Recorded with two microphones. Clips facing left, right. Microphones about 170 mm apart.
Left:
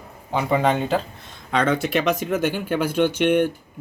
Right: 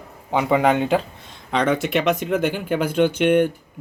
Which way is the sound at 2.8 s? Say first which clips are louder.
Right 2 dB; 55° right (ahead or behind).